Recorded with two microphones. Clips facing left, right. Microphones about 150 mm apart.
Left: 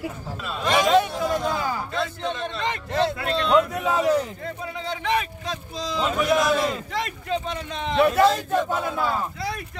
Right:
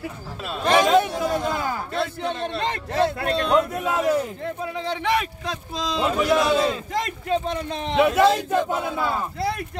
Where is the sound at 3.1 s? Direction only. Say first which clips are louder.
Even; 50° right (ahead or behind).